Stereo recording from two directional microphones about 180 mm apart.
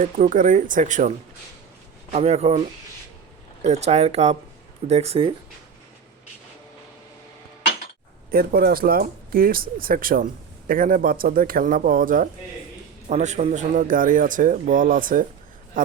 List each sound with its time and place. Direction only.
0.0 s a man's voice: 50° right (ahead or behind)
2.1 s speech: 35° right (ahead or behind)
8.3 s a man's voice: 55° right (ahead or behind)